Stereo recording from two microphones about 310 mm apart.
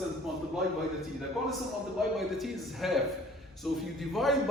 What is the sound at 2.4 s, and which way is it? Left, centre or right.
A man's voice, centre.